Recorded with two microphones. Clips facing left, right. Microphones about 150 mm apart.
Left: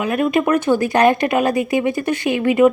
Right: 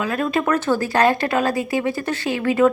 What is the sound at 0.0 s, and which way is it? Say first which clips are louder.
A woman's voice: left 4 dB; 15° left (ahead or behind).